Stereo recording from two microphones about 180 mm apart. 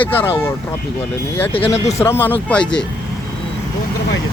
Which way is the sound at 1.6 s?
15° left (ahead or behind).